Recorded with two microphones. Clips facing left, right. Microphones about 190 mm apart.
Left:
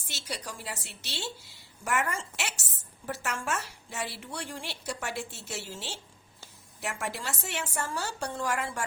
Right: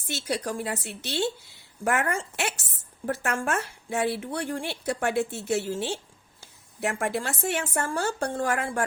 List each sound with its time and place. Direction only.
0.0 s a woman's voice: 55° right (ahead or behind)